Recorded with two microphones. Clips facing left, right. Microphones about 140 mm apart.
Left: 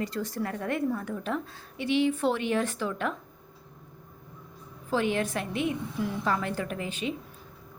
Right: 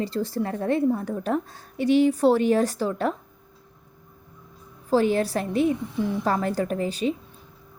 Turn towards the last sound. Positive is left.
turn(degrees=-35)  # may be behind; listen again after turning